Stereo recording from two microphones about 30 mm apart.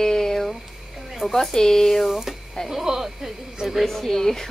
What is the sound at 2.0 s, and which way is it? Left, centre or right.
Speech, centre.